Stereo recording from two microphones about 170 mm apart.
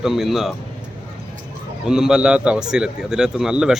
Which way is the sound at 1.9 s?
5° right (ahead or behind).